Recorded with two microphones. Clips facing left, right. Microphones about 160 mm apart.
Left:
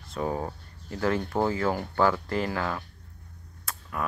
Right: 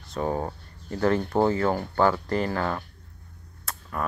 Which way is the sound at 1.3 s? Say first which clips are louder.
Right 4 dB; 30° right (ahead or behind).